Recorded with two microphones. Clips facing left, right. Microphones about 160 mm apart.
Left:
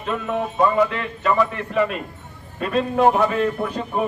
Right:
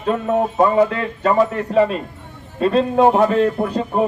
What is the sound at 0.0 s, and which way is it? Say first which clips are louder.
A man's voice: right 6 dB; 40° right (ahead or behind).